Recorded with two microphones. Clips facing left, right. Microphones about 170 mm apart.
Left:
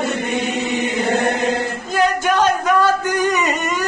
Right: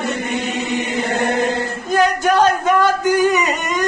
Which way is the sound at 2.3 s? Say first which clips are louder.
Right 2 dB; 35° right (ahead or behind).